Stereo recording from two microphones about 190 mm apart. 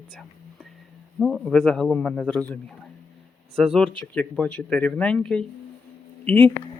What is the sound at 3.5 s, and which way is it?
A man's voice, centre (ahead or behind).